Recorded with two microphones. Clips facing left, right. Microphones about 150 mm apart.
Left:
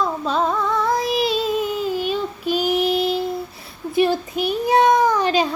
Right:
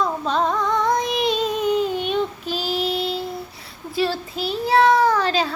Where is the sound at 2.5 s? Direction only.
15° left (ahead or behind).